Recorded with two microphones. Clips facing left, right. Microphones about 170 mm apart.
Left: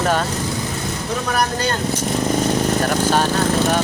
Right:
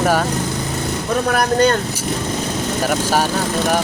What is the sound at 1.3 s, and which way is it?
Speech, 55° right (ahead or behind).